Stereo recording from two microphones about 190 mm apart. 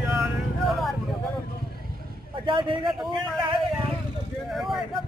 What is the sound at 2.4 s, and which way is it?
Speech, 25° right (ahead or behind).